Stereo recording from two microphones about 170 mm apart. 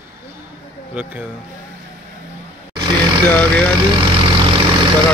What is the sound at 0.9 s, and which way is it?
Speech, 10° right (ahead or behind).